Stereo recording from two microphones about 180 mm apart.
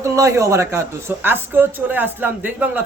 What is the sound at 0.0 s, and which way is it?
A man's voice, 15° right (ahead or behind).